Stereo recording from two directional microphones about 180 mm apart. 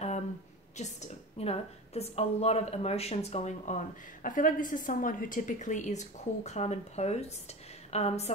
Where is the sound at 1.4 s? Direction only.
35° left (ahead or behind).